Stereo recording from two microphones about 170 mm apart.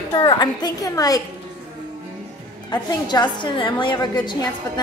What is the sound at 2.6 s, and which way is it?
A woman's voice, 25° left (ahead or behind).